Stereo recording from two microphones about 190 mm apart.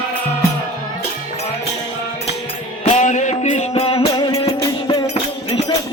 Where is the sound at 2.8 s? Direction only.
40° left (ahead or behind).